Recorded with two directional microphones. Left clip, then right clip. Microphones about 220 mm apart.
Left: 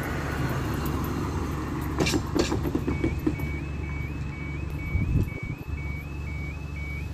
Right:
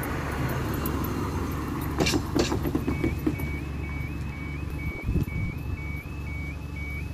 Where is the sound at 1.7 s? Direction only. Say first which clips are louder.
Right 1 dB; 5° right (ahead or behind).